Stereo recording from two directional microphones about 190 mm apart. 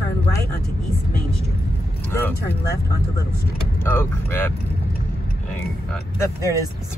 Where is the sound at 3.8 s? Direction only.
10° left (ahead or behind).